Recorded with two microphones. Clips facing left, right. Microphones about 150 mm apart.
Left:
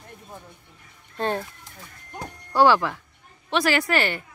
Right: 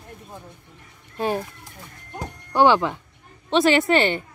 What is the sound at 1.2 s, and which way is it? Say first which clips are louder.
A woman's voice: right 2 dB; 10° right (ahead or behind).